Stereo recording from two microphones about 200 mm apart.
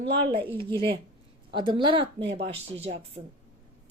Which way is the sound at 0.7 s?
25° right (ahead or behind).